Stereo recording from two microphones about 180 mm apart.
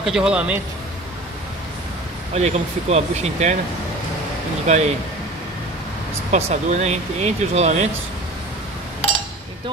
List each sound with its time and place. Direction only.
0.0 s speech: 5° right (ahead or behind)
2.3 s speech: 35° right (ahead or behind)
4.6 s speech: 40° right (ahead or behind)
6.3 s speech: 40° right (ahead or behind)